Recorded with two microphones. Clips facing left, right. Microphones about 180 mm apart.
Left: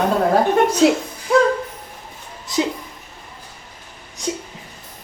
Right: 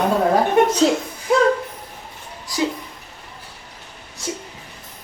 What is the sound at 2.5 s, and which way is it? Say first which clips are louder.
Speech: left 2 dB; 20° left (ahead or behind).